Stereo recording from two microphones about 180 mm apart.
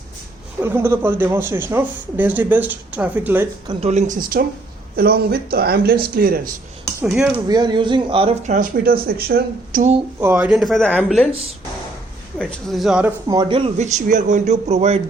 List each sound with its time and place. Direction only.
0.6 s speech: 15° right (ahead or behind)
3.7 s a man's voice: 35° right (ahead or behind); by 6.5 s 55° right (ahead or behind)
7.0 s speech: centre (ahead or behind)
7.4 s speech: 25° right (ahead or behind)
8.4 s a man's voice: 50° right (ahead or behind)
10.2 s speech: 10° right (ahead or behind); by 11.2 s 5° left (ahead or behind)
12.4 s speech: centre (ahead or behind)
13.2 s speech: 25° right (ahead or behind)